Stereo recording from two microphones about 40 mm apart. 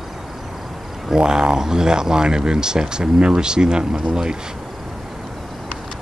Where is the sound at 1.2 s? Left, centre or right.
Right.